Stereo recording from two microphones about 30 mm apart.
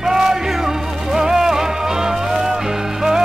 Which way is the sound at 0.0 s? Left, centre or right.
Centre.